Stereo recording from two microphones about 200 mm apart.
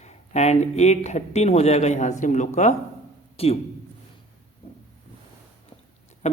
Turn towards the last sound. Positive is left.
turn(degrees=35)  # may be behind; listen again after turning